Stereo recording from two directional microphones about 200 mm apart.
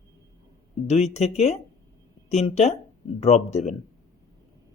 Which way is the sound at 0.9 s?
35° left (ahead or behind).